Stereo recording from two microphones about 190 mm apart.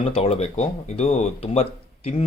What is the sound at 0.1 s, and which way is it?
Speech, 35° left (ahead or behind).